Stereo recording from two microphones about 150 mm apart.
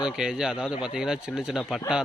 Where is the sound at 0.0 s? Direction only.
5° right (ahead or behind).